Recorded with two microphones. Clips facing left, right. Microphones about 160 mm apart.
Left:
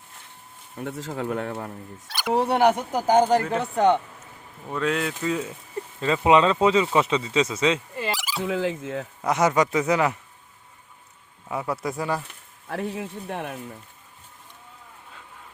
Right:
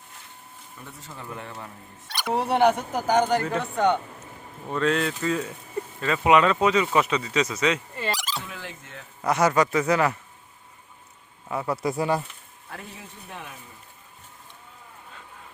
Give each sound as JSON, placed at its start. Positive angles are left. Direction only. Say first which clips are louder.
{"t": 0.8, "sound": "speech", "louder": "left 12 dB", "side_deg": 90}
{"t": 2.0, "sound": "a sound", "louder": "left 1 dB", "side_deg": 0}
{"t": 2.6, "sound": "speech", "louder": "left 1 dB", "side_deg": 5}
{"t": 3.1, "sound": "speech", "louder": "left 3 dB", "side_deg": 30}
{"t": 4.7, "sound": "speech", "louder": "right 1 dB", "side_deg": 10}
{"t": 7.9, "sound": "a sound", "louder": "left 1 dB", "side_deg": 5}
{"t": 8.4, "sound": "speech", "louder": "left 14 dB", "side_deg": 90}
{"t": 9.2, "sound": "speech", "louder": "even", "side_deg": 20}
{"t": 11.6, "sound": "speech", "louder": "right 2 dB", "side_deg": 0}
{"t": 11.9, "sound": "speech", "louder": "right 5 dB", "side_deg": -15}
{"t": 12.6, "sound": "speech", "louder": "left 12 dB", "side_deg": 75}